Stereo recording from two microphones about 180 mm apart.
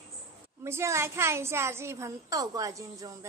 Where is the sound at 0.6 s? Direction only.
15° right (ahead or behind).